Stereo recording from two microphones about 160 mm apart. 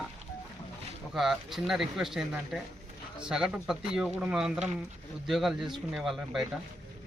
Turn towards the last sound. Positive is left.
turn(degrees=0)  # may be behind; listen again after turning